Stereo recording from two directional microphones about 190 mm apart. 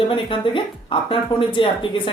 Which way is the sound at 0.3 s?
25° left (ahead or behind).